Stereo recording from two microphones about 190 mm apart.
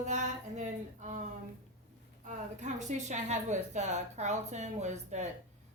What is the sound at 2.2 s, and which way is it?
A woman's voice, 40° right (ahead or behind).